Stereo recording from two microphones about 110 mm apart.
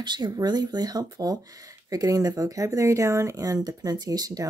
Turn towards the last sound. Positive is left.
turn(degrees=-35)  # may be behind; listen again after turning